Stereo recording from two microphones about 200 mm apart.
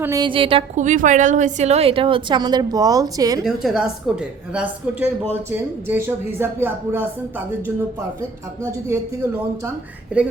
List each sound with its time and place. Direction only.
0.0 s a woman's voice: 15° right (ahead or behind)
3.4 s a woman's voice: centre (ahead or behind)
8.9 s speech: 15° right (ahead or behind)
10.1 s speech: 5° right (ahead or behind)